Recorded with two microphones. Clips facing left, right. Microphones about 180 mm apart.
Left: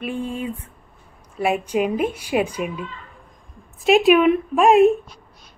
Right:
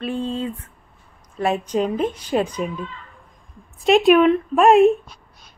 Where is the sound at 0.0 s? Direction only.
15° left (ahead or behind).